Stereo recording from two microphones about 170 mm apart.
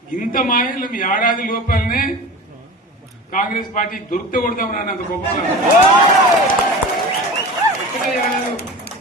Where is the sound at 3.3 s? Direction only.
50° left (ahead or behind).